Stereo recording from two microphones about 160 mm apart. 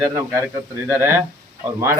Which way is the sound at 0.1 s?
15° right (ahead or behind).